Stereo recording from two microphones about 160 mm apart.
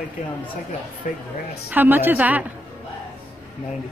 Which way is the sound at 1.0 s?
55° left (ahead or behind).